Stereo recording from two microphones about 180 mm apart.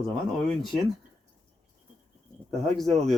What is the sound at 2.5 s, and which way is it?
Speech, centre (ahead or behind).